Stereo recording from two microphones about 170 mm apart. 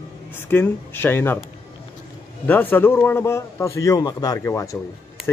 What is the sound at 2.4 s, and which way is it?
Speech, 10° left (ahead or behind).